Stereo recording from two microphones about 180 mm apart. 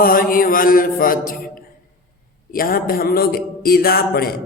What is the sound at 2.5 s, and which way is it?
Mantra, 55° left (ahead or behind).